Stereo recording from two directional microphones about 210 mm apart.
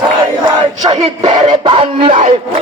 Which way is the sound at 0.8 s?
20° right (ahead or behind).